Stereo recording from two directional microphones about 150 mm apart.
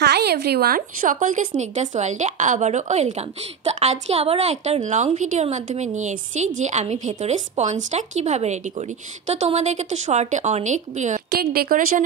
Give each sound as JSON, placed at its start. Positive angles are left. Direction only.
{"t": 0.0, "sound": "a woman's voice", "side_deg": -90}
{"t": 1.6, "sound": "a woman's voice", "side_deg": -50}
{"t": 11.2, "sound": "a woman's voice", "side_deg": -90}